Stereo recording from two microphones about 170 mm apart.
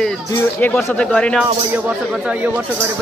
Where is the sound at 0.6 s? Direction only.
10° left (ahead or behind).